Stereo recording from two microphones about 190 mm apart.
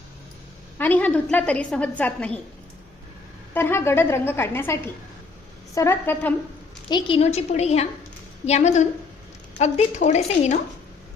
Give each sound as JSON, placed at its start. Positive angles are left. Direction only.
{"t": 0.8, "sound": "a woman's voice", "side_deg": 10}
{"t": 3.5, "sound": "a woman's voice", "side_deg": 10}
{"t": 6.8, "sound": "a woman's voice", "side_deg": 25}